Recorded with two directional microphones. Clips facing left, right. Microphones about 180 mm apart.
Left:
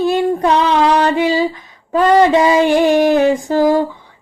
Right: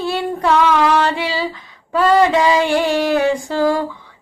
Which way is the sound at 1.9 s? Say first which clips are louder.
Left 3 dB; 20° left (ahead or behind).